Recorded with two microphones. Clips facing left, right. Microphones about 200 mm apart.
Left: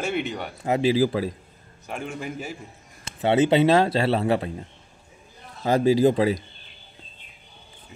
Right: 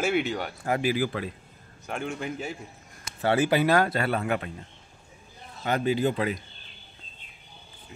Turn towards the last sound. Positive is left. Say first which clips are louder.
# left 7 dB
turn(degrees=35)  # may be behind; listen again after turning